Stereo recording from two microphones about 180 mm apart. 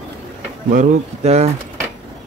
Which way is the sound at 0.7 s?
40° right (ahead or behind).